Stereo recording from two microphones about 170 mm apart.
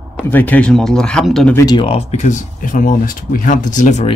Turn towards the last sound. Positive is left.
turn(degrees=45)  # may be behind; listen again after turning